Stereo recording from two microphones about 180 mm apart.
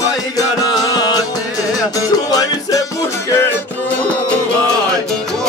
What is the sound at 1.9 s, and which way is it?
Music, 20° left (ahead or behind).